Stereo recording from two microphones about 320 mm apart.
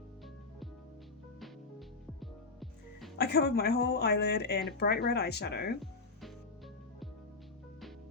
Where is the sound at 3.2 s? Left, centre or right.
Left.